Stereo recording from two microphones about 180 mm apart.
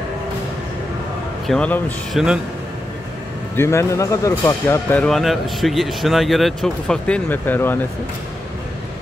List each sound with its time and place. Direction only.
1.5 s speech: 5° left (ahead or behind)
3.5 s speech: 15° left (ahead or behind)
4.9 s speech: 5° left (ahead or behind)